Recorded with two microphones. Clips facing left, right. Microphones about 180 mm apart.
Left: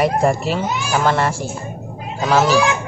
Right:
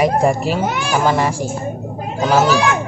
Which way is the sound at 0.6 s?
55° right (ahead or behind).